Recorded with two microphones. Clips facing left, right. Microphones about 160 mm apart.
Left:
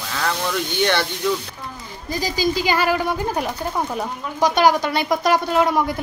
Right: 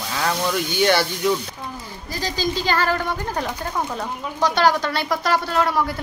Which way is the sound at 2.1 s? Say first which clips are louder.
Left 3 dB; 10° left (ahead or behind).